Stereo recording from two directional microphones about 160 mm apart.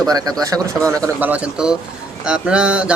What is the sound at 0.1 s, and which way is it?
A man's voice, 25° right (ahead or behind).